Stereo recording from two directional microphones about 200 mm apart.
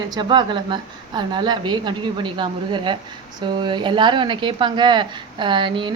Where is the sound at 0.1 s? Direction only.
25° right (ahead or behind).